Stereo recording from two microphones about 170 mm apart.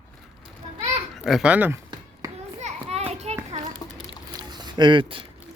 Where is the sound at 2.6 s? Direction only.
40° right (ahead or behind).